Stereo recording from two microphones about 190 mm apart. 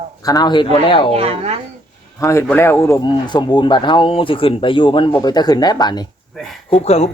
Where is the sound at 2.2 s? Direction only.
15° left (ahead or behind).